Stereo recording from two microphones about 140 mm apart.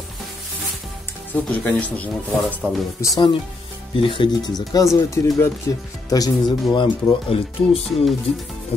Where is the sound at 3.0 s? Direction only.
30° left (ahead or behind).